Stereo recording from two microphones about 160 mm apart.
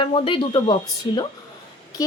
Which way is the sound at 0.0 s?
35° left (ahead or behind).